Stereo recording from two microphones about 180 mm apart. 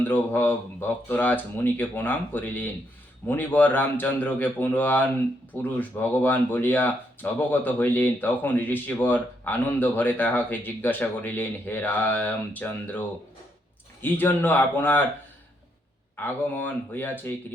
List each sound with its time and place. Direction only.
0.1 s speech: 10° left (ahead or behind)
14.0 s speech: 10° left (ahead or behind)
16.1 s speech: 10° left (ahead or behind)